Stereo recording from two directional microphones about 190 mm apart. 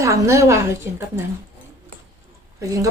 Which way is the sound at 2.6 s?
15° right (ahead or behind).